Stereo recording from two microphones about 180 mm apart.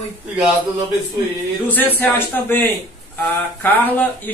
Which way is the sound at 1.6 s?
10° left (ahead or behind).